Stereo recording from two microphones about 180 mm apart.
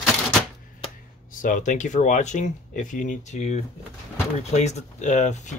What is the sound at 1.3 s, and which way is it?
Speech, 45° left (ahead or behind).